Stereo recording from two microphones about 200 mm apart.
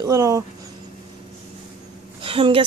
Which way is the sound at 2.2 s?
25° right (ahead or behind).